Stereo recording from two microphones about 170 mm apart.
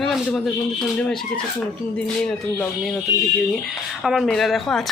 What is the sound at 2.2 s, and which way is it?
Speech, 5° left (ahead or behind).